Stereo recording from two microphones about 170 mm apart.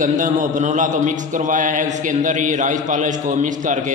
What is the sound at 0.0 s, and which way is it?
A man's voice, 50° right (ahead or behind).